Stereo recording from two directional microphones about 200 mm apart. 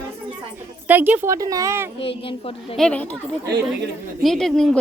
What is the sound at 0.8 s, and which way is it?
Speech, 10° right (ahead or behind).